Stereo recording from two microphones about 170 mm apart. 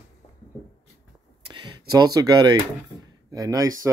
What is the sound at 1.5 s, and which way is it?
Speech, 20° right (ahead or behind).